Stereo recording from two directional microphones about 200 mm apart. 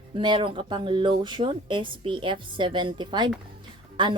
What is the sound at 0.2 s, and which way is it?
Speech, 25° right (ahead or behind).